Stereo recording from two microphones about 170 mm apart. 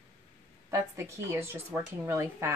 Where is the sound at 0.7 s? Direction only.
15° right (ahead or behind).